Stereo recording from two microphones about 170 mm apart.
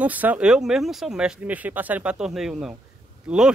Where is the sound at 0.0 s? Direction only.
10° right (ahead or behind).